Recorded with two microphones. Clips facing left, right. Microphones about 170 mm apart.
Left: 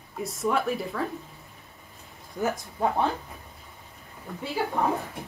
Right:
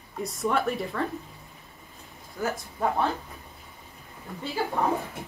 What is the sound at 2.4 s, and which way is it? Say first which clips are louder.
Speech: left 2 dB; 20° left (ahead or behind).